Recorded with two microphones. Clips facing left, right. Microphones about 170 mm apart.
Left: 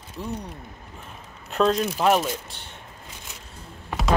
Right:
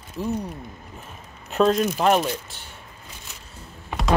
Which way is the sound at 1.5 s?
Centre (ahead or behind).